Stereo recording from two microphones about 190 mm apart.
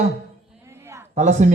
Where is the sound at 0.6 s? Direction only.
15° right (ahead or behind).